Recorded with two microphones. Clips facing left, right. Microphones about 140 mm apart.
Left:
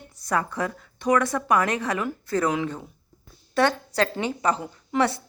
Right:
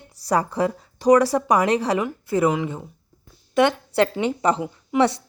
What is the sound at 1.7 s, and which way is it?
Speech, 30° right (ahead or behind).